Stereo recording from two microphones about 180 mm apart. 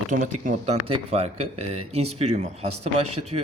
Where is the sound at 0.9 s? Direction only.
35° right (ahead or behind).